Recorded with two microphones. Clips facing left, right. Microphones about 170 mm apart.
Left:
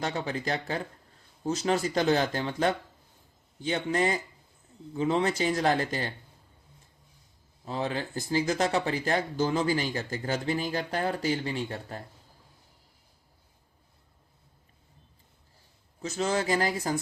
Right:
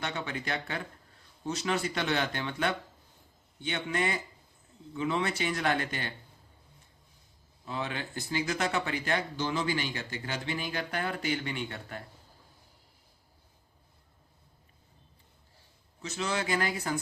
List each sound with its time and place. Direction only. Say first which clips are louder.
0.0 s speech: left 5 dB; 35° left (ahead or behind)
7.6 s speech: left 4 dB; 35° left (ahead or behind)
16.0 s speech: left 5 dB; 40° left (ahead or behind)